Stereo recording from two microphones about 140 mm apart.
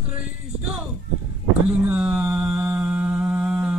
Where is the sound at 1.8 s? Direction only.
10° right (ahead or behind).